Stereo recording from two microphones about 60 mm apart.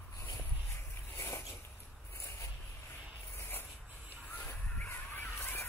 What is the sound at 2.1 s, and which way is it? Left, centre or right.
Zipper, left.